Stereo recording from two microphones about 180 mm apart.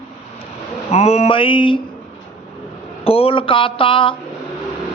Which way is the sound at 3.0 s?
30° left (ahead or behind).